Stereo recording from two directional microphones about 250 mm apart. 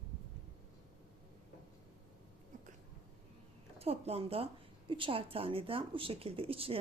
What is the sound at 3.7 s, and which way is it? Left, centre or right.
Speech, right.